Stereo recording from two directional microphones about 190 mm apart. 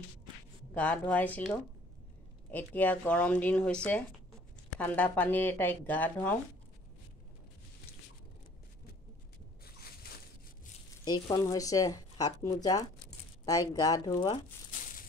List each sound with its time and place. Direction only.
0.7 s speech: 5° left (ahead or behind)
11.1 s a woman's voice: 15° left (ahead or behind)
14.7 s a sound: 45° left (ahead or behind)